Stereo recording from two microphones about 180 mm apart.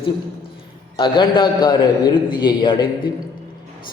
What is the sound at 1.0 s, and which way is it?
A man's voice, 25° left (ahead or behind).